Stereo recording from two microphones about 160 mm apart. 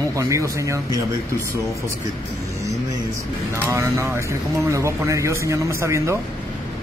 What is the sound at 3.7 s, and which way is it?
Speech, 15° right (ahead or behind).